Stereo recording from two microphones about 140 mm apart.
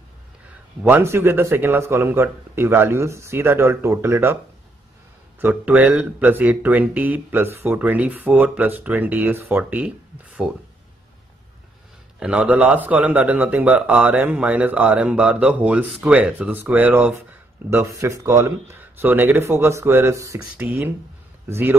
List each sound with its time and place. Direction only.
0.8 s speech: 15° right (ahead or behind)
5.4 s speech: 10° right (ahead or behind)
12.2 s speech: 10° right (ahead or behind)